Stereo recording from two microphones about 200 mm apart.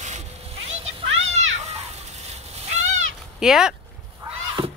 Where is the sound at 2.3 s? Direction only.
35° right (ahead or behind).